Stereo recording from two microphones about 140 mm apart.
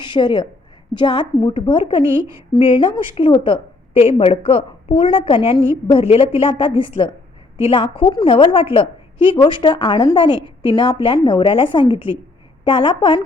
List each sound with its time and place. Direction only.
0.0 s a woman's voice: 35° left (ahead or behind)